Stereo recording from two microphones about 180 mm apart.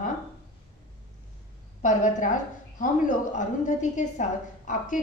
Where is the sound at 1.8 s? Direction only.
45° left (ahead or behind).